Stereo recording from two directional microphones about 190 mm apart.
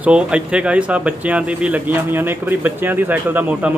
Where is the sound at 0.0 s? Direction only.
5° right (ahead or behind).